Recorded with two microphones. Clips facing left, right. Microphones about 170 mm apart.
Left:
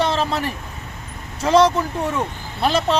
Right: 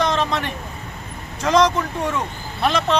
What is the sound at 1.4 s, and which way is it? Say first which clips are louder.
Speech: left 2 dB; 30° left (ahead or behind).